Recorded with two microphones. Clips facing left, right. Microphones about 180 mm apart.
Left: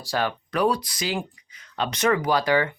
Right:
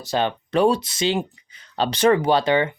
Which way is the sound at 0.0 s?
20° right (ahead or behind).